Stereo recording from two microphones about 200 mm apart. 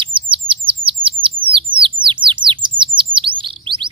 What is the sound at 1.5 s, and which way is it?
Chirp, 25° right (ahead or behind).